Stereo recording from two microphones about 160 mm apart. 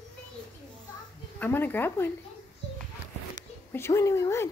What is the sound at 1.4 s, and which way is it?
Speech, 10° left (ahead or behind).